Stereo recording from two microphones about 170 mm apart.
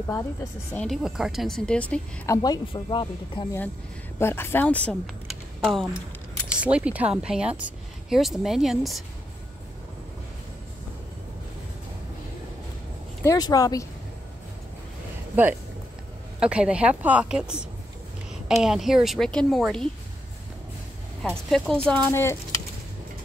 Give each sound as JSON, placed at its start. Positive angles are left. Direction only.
{"t": 0.1, "sound": "speech", "side_deg": 15}
{"t": 0.8, "sound": "a woman's voice", "side_deg": 0}
{"t": 2.2, "sound": "speech", "side_deg": 20}
{"t": 4.2, "sound": "a woman's voice", "side_deg": 15}
{"t": 13.2, "sound": "speech", "side_deg": 20}
{"t": 16.3, "sound": "a woman's voice", "side_deg": -5}
{"t": 21.5, "sound": "a woman's voice", "side_deg": 0}